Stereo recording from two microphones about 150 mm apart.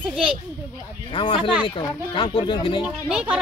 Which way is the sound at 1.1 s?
35° left (ahead or behind).